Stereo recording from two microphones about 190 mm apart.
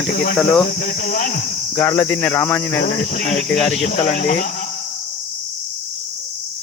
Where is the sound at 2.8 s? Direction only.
45° left (ahead or behind).